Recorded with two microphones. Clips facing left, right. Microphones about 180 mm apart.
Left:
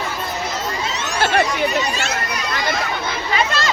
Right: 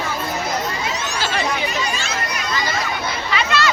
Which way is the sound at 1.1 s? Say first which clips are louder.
Left 6 dB; 55° left (ahead or behind).